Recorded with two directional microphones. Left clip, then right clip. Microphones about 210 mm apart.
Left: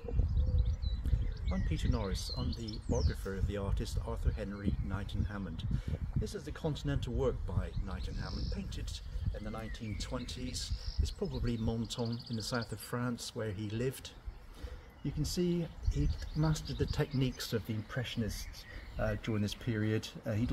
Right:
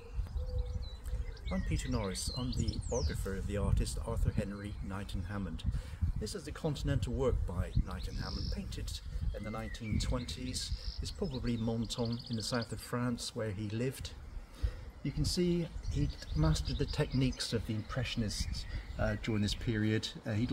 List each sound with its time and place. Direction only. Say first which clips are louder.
1.5 s speech: right 1 dB; 10° left (ahead or behind)
9.3 s speech: right 2 dB; 10° left (ahead or behind)
15.0 s speech: right 1 dB; 15° left (ahead or behind)